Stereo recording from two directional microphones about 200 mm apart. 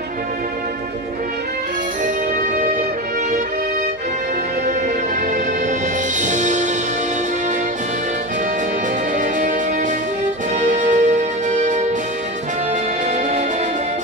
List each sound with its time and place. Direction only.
6.2 s music: 40° right (ahead or behind)
10.7 s music: 35° right (ahead or behind)